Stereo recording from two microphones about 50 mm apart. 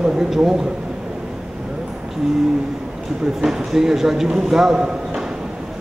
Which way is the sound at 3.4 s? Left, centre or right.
Centre.